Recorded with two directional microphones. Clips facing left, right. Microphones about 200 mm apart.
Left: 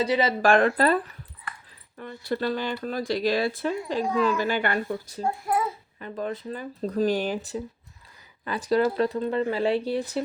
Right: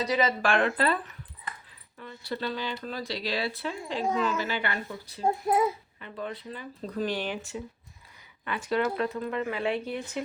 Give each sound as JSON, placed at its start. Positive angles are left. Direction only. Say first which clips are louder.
{"t": 0.0, "sound": "speech", "louder": "left 4 dB", "side_deg": 30}
{"t": 1.5, "sound": "dog", "louder": "even", "side_deg": -20}
{"t": 2.0, "sound": "speech", "louder": "left 6 dB", "side_deg": 50}
{"t": 5.2, "sound": "a child's voice", "louder": "right 2 dB", "side_deg": -20}
{"t": 6.0, "sound": "speech", "louder": "left 9 dB", "side_deg": 40}